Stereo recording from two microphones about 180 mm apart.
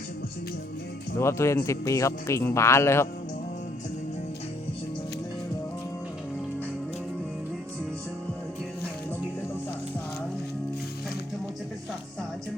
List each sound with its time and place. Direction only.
1.2 s speech: 15° left (ahead or behind)